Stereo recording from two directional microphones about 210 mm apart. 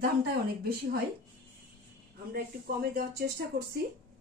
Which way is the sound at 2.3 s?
45° right (ahead or behind).